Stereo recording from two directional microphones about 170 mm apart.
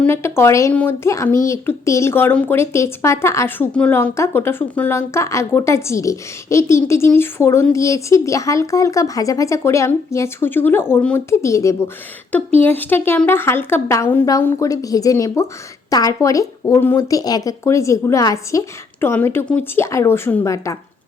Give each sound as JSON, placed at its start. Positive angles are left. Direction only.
{"t": 0.0, "sound": "speech", "side_deg": 15}